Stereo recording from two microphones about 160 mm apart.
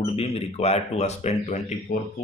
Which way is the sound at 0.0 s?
40° left (ahead or behind).